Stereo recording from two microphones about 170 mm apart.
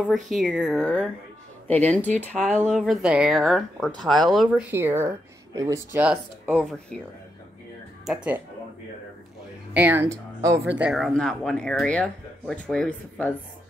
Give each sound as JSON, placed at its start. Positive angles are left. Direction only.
{"t": 0.3, "sound": "speech", "side_deg": 0}
{"t": 9.8, "sound": "speech", "side_deg": -10}
{"t": 10.6, "sound": "speech", "side_deg": -5}